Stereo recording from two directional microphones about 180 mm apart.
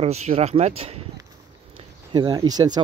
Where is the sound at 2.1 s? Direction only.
25° right (ahead or behind).